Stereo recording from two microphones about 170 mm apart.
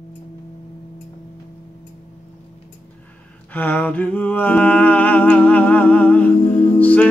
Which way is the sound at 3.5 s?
10° left (ahead or behind).